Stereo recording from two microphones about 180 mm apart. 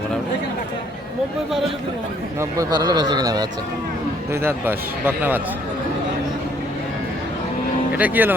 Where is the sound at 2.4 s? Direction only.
20° right (ahead or behind).